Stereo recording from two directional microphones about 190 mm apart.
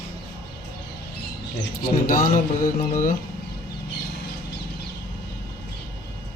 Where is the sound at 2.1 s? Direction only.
45° left (ahead or behind).